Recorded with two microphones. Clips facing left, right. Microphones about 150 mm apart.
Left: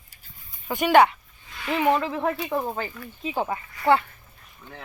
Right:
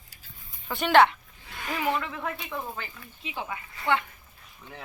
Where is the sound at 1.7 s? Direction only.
30° left (ahead or behind).